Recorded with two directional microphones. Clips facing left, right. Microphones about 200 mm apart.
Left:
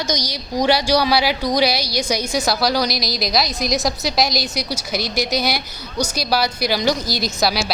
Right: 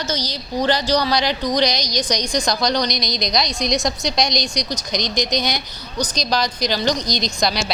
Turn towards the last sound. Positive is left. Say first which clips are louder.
# left 1 dB
turn(degrees=5)  # may be behind; listen again after turning